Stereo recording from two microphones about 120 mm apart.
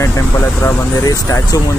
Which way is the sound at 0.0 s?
25° left (ahead or behind).